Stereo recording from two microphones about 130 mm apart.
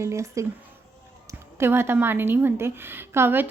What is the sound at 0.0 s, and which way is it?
Speech, 20° right (ahead or behind).